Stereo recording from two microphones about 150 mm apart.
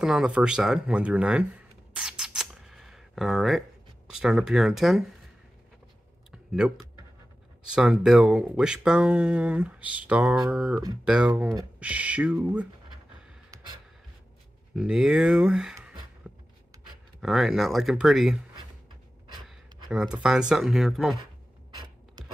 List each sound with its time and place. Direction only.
0.0 s speech: 5° right (ahead or behind)
2.0 s a sound: 5° right (ahead or behind)
4.1 s speech: 5° right (ahead or behind)
6.3 s speech: 5° right (ahead or behind)
11.8 s a sound: 10° right (ahead or behind)
14.8 s speech: 5° right (ahead or behind)
17.2 s speech: centre (ahead or behind)
19.5 s speech: 5° right (ahead or behind)